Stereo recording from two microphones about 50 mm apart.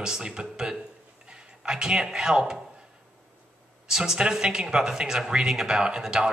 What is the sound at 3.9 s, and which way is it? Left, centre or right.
Speech, centre.